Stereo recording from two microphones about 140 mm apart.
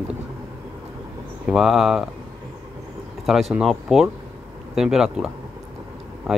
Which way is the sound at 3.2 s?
Centre (ahead or behind).